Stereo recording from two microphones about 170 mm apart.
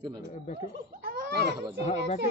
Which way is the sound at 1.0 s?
70° right (ahead or behind).